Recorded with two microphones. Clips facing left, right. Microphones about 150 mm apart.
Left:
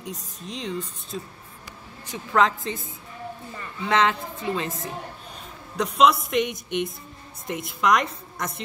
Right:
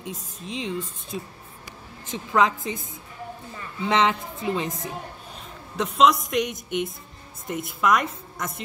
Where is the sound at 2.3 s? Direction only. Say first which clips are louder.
Even; 15° right (ahead or behind).